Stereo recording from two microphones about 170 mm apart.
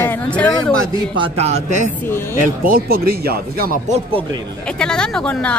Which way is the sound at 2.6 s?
60° right (ahead or behind).